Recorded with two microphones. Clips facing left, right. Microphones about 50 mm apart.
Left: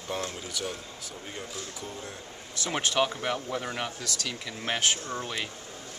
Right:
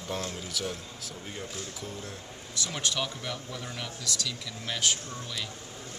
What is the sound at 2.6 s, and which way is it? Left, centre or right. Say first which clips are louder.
A man's voice: left 5 dB; left.